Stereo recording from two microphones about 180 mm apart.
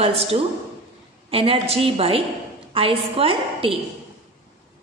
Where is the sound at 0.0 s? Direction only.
35° right (ahead or behind).